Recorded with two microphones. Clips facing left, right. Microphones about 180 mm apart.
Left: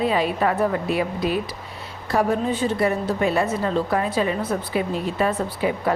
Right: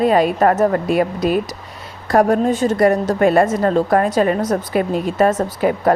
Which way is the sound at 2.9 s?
90° right.